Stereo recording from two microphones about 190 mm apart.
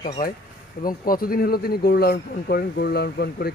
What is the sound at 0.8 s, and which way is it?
Speech, 50° left (ahead or behind).